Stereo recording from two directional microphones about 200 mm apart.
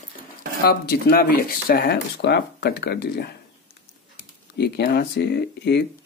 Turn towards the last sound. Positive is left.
turn(degrees=55)  # may be behind; listen again after turning